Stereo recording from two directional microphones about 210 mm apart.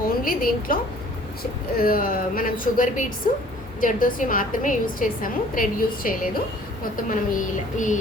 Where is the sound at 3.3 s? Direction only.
40° left (ahead or behind).